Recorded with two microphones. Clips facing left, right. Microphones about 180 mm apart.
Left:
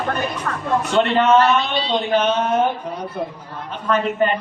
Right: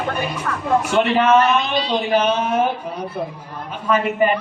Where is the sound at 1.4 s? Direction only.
30° left (ahead or behind).